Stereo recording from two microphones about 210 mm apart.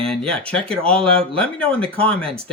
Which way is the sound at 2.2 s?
25° right (ahead or behind).